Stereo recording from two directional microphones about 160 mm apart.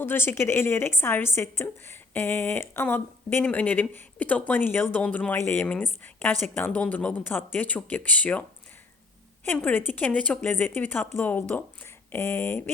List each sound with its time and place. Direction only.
0.0 s a woman's voice: 15° left (ahead or behind)
9.5 s a woman's voice: 10° left (ahead or behind)